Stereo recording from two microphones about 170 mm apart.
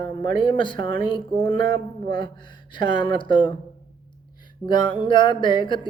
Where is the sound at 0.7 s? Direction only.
30° left (ahead or behind).